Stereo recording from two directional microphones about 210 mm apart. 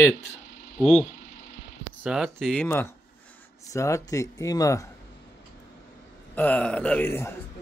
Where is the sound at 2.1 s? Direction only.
Centre (ahead or behind); by 4.8 s 15° left (ahead or behind).